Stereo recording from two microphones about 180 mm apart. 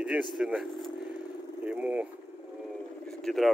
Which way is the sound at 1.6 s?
10° right (ahead or behind).